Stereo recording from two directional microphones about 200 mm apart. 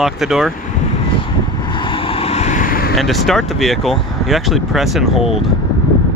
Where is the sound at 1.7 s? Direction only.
25° left (ahead or behind); by 3.0 s 45° left (ahead or behind).